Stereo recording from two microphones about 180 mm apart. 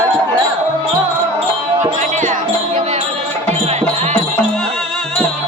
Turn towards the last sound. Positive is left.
turn(degrees=-40)  # may be behind; listen again after turning